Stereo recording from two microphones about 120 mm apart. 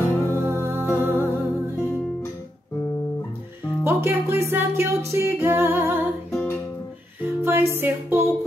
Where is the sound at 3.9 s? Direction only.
20° right (ahead or behind).